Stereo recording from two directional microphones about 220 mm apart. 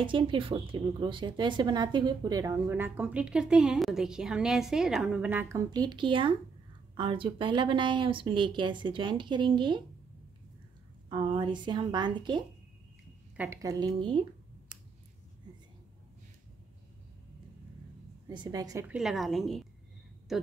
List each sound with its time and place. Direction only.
0.0 s a woman's voice: 20° right (ahead or behind)
11.1 s a woman's voice: 20° right (ahead or behind)
18.3 s a woman's voice: 20° right (ahead or behind); by 20.4 s centre (ahead or behind)